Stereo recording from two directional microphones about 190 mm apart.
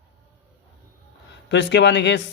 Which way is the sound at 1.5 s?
65° left (ahead or behind).